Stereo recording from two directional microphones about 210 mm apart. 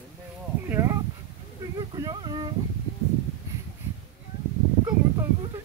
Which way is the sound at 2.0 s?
20° right (ahead or behind).